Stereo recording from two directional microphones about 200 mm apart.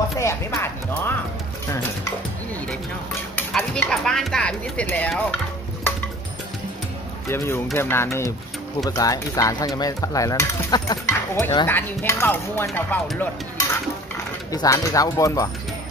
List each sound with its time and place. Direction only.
0.2 s speech: 15° left (ahead or behind)
3.3 s speech: 5° left (ahead or behind)
7.2 s speech: 15° left (ahead or behind)
14.5 s speech: 15° left (ahead or behind)